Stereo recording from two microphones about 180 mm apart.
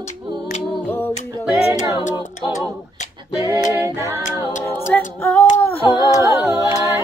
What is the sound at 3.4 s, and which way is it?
A capella, 15° right (ahead or behind).